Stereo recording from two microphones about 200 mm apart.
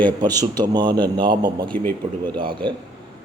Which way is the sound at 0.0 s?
20° right (ahead or behind).